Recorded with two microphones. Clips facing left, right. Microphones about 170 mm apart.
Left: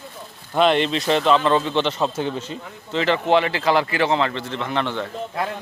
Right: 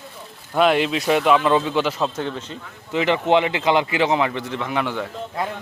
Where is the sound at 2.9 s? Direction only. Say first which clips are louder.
Right 1 dB; 15° right (ahead or behind).